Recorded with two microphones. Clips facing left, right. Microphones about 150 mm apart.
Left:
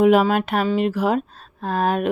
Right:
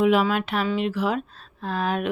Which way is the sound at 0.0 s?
45° left (ahead or behind).